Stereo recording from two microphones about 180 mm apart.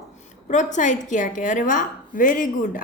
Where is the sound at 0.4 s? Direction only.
40° left (ahead or behind).